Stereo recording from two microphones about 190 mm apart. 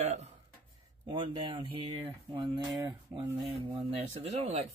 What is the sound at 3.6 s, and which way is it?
Speech, 30° right (ahead or behind).